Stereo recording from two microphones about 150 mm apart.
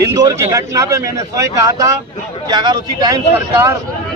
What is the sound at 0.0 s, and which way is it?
Speech, 25° right (ahead or behind).